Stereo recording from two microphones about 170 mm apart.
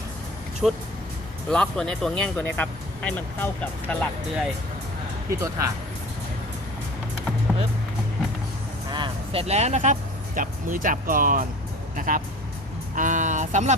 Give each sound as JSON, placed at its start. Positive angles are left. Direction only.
{"t": 0.6, "sound": "speech", "side_deg": 0}
{"t": 5.3, "sound": "speech", "side_deg": -20}
{"t": 7.5, "sound": "music", "side_deg": 5}
{"t": 8.9, "sound": "speech", "side_deg": -30}
{"t": 13.0, "sound": "a sound", "side_deg": -50}